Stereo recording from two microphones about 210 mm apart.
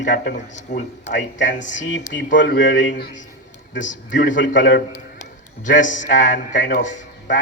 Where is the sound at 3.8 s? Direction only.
40° left (ahead or behind).